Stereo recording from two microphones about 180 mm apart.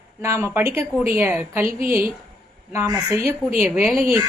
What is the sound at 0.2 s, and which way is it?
A woman's voice, 15° right (ahead or behind).